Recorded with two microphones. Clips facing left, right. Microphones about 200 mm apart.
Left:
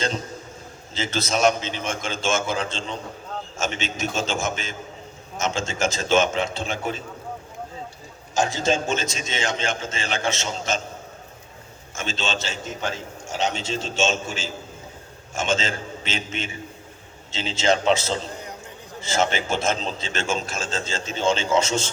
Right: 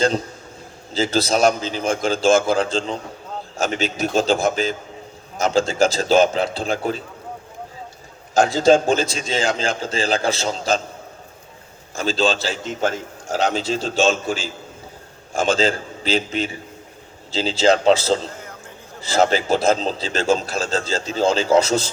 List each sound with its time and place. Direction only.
0.9 s a man's voice: 35° right (ahead or behind)
8.9 s a man's voice: 35° right (ahead or behind)
11.9 s a man's voice: 35° right (ahead or behind)